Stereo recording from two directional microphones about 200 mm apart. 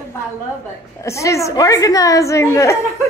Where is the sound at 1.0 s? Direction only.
15° left (ahead or behind).